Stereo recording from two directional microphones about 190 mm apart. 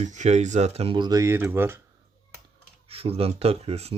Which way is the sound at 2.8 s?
30° right (ahead or behind).